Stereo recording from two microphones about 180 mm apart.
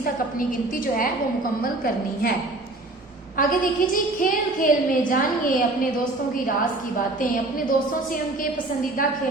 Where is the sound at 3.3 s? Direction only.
50° left (ahead or behind).